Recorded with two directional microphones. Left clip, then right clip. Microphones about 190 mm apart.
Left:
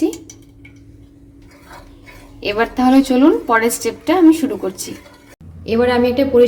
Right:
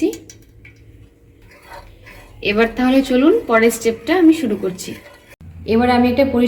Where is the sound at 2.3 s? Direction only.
60° left (ahead or behind).